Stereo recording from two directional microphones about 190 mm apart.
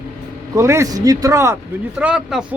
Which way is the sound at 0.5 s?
15° right (ahead or behind).